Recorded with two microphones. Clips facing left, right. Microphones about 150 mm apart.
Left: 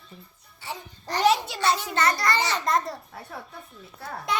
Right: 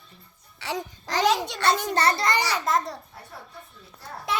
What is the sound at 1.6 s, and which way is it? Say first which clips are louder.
Speech: right 1 dB; 60° right (ahead or behind).